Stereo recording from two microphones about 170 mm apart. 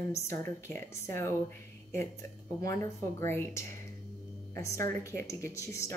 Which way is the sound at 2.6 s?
15° left (ahead or behind).